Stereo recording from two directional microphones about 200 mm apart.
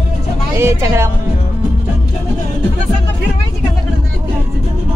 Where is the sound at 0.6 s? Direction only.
15° right (ahead or behind).